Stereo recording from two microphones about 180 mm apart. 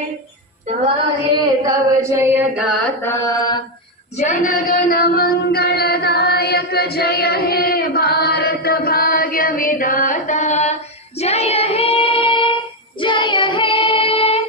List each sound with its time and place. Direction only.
0.7 s female singing: 30° right (ahead or behind); by 3.0 s centre (ahead or behind)
3.0 s mantra: 15° left (ahead or behind)
4.2 s a sound: 45° left (ahead or behind); by 12.5 s 30° left (ahead or behind)
13.0 s child singing: 25° left (ahead or behind)